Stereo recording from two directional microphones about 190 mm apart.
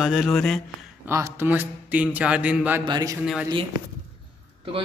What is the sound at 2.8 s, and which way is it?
Speech, 20° right (ahead or behind).